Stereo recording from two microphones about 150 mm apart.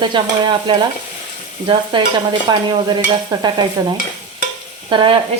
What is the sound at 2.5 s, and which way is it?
Stir, 25° right (ahead or behind).